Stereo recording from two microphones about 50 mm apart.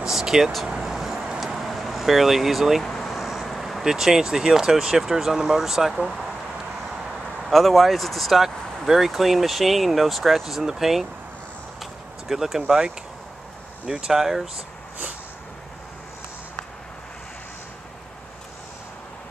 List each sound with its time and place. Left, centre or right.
0.0 s vehicle: centre
1.4 s vehicle: centre
2.8 s vehicle: centre
3.1 s vehicle: centre
3.8 s speech: centre
7.1 s speech: centre
11.8 s a sound: centre
13.8 s speech: centre